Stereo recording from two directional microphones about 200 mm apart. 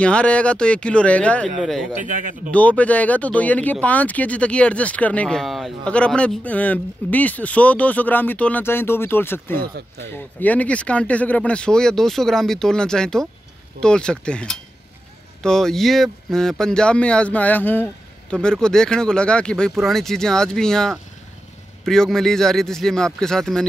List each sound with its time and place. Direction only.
0.0 s speech: 5° left (ahead or behind)
2.0 s a man's voice: 40° right (ahead or behind)
2.5 s speech: 5° left (ahead or behind)